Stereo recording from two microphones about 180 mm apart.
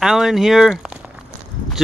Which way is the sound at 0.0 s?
5° right (ahead or behind).